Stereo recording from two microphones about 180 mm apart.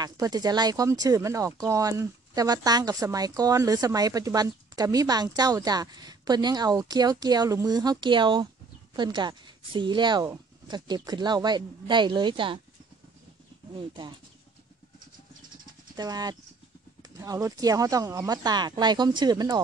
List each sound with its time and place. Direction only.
0.0 s speech: 20° right (ahead or behind)
13.7 s speech: 25° right (ahead or behind)
16.0 s speech: 20° right (ahead or behind)